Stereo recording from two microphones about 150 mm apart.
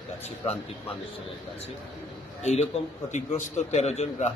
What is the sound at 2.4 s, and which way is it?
A man's voice, 45° left (ahead or behind).